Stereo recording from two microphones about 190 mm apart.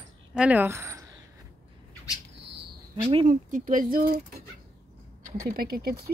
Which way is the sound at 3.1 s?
35° right (ahead or behind).